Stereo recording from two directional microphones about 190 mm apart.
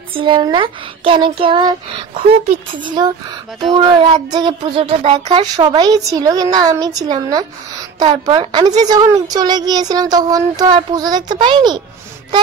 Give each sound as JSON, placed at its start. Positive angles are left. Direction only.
{"t": 0.1, "sound": "speech", "side_deg": -25}